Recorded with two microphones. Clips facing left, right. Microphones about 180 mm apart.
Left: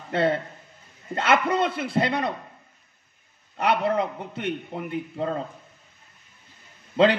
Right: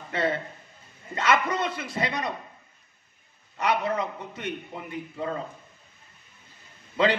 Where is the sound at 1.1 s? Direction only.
60° left (ahead or behind).